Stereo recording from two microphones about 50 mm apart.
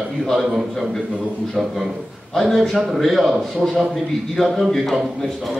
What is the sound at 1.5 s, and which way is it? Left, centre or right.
A man's voice, centre.